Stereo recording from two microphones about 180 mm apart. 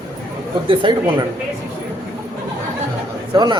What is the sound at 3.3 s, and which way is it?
Speech, 25° right (ahead or behind).